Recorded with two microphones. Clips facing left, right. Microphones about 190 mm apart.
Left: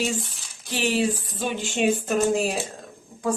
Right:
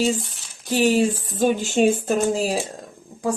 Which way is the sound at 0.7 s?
45° right (ahead or behind).